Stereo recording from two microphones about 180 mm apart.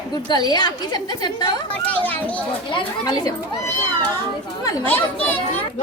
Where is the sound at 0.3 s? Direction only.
25° left (ahead or behind).